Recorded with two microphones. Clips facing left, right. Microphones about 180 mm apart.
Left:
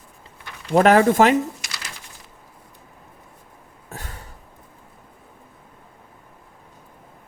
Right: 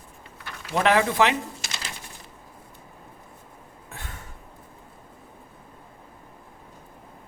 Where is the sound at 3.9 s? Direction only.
40° left (ahead or behind).